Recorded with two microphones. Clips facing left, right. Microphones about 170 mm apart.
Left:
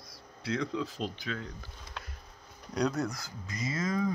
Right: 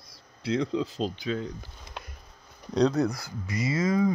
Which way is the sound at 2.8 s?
65° right (ahead or behind).